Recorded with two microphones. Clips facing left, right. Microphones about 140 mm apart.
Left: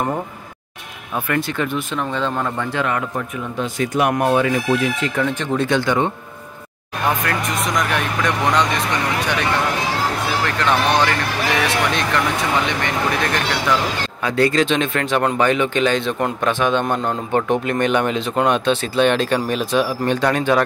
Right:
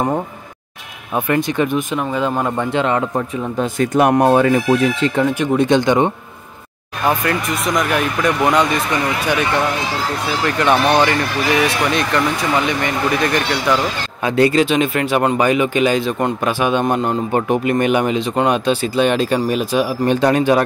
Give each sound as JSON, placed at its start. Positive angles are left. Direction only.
{"t": 1.1, "sound": "speech", "side_deg": -20}
{"t": 2.4, "sound": "a man's voice", "side_deg": -20}
{"t": 3.2, "sound": "speech", "side_deg": -45}
{"t": 5.4, "sound": "speech", "side_deg": -15}
{"t": 7.2, "sound": "speech", "side_deg": -5}
{"t": 10.4, "sound": "speech", "side_deg": -10}
{"t": 14.2, "sound": "speech", "side_deg": -15}
{"t": 20.1, "sound": "speech", "side_deg": -15}